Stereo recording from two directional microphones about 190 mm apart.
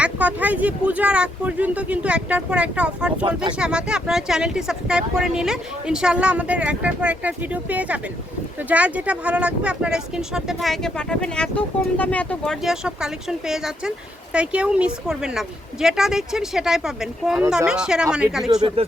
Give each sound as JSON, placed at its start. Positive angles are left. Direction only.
{"t": 0.0, "sound": "speech", "side_deg": -10}
{"t": 18.8, "sound": "speech", "side_deg": -30}